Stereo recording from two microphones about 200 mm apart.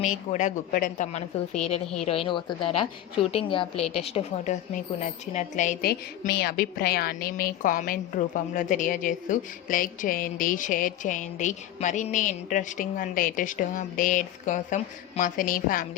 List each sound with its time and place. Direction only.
0.3 s a woman's voice: 40° left (ahead or behind)
1.6 s a woman's voice: 30° left (ahead or behind)